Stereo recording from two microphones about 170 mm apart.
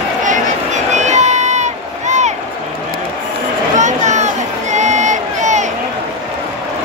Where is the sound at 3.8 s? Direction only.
45° right (ahead or behind).